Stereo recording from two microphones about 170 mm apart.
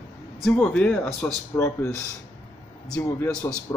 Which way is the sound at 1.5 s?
15° left (ahead or behind).